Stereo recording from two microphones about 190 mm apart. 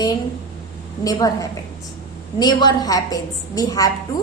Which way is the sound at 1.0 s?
20° left (ahead or behind).